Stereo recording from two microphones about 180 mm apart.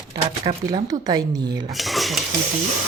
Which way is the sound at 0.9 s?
20° right (ahead or behind).